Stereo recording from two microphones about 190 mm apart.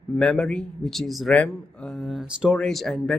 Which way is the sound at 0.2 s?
5° left (ahead or behind).